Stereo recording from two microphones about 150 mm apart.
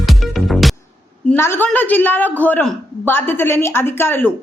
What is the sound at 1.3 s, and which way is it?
A woman's voice, 15° left (ahead or behind).